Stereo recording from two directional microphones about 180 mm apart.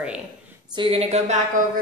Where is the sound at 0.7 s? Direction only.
30° right (ahead or behind).